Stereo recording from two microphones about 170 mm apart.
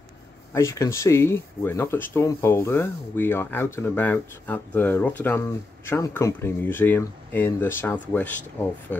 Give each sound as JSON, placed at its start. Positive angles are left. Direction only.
{"t": 0.5, "sound": "speech", "side_deg": 15}